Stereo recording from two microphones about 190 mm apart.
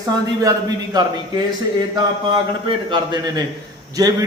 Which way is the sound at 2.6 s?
25° right (ahead or behind).